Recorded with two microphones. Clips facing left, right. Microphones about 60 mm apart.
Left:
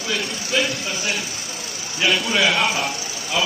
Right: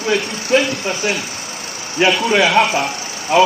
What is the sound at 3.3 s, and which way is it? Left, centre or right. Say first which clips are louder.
Speech: right 11 dB; right.